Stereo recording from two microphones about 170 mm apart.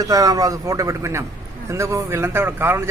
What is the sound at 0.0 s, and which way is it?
A man's voice, 20° right (ahead or behind).